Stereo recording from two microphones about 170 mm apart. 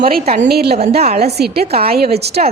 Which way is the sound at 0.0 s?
60° right (ahead or behind).